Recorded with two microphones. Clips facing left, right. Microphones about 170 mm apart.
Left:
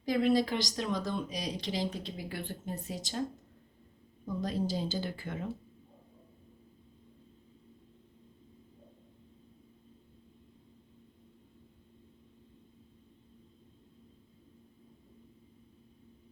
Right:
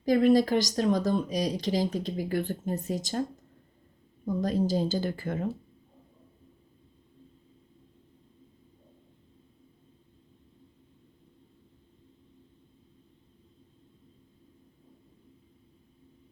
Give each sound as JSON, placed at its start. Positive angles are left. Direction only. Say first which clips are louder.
{"t": 0.0, "sound": "speech", "louder": "right 6 dB", "side_deg": -45}
{"t": 4.4, "sound": "speech", "louder": "right 6 dB", "side_deg": -45}